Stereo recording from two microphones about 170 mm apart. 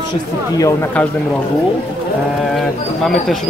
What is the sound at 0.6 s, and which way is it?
Speech, 10° left (ahead or behind).